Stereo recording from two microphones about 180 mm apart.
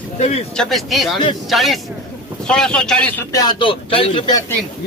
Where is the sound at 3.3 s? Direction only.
25° left (ahead or behind).